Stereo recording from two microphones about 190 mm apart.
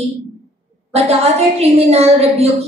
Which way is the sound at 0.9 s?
35° right (ahead or behind).